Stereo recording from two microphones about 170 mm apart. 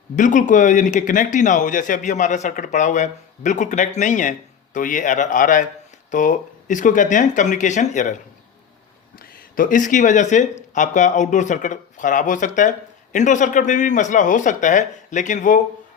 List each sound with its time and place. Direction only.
0.2 s speech: 50° left (ahead or behind)
9.1 s speech: 55° left (ahead or behind)